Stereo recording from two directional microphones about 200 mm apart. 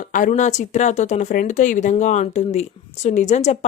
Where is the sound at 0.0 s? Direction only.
40° left (ahead or behind).